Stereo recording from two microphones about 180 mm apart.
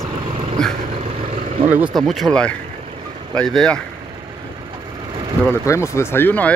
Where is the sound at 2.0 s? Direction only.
Centre (ahead or behind).